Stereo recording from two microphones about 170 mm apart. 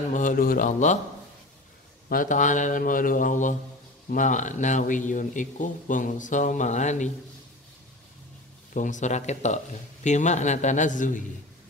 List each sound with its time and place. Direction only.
0.1 s speech: 50° left (ahead or behind)
2.0 s speech: 50° left (ahead or behind)
8.7 s speech: 45° left (ahead or behind)